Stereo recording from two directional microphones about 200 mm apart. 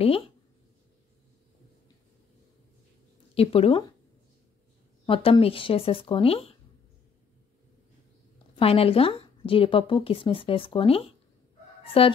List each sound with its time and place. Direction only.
3.3 s a woman's voice: 30° left (ahead or behind)
5.0 s a woman's voice: 25° left (ahead or behind)
8.5 s a woman's voice: 30° left (ahead or behind)